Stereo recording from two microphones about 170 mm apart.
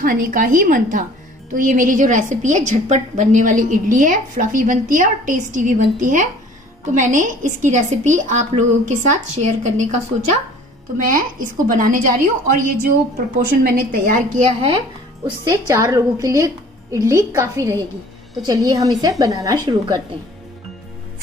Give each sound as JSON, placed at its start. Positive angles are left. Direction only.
{"t": 0.0, "sound": "a woman's voice", "side_deg": -55}
{"t": 11.0, "sound": "a woman's voice", "side_deg": -55}
{"t": 14.4, "sound": "speech", "side_deg": -35}
{"t": 15.2, "sound": "a woman's voice", "side_deg": -20}